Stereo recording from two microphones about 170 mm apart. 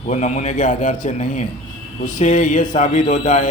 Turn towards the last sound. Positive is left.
turn(degrees=45)  # may be behind; listen again after turning